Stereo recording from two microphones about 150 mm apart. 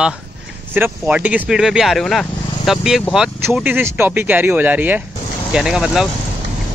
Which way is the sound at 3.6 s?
15° right (ahead or behind).